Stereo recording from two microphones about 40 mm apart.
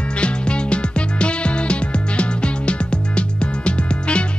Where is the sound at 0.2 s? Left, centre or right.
Left.